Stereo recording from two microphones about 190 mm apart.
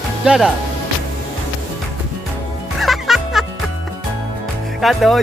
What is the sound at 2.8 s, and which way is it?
Music, centre (ahead or behind).